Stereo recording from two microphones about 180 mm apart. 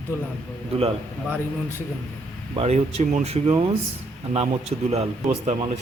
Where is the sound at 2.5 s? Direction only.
35° right (ahead or behind).